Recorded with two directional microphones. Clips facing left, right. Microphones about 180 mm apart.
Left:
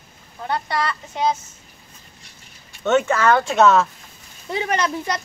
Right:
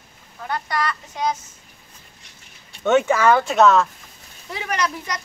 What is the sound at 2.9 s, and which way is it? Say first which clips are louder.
Speech: right 1 dB; 15° right (ahead or behind).